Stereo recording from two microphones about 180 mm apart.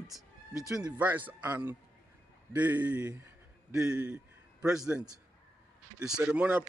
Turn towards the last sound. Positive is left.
turn(degrees=-5)  # may be behind; listen again after turning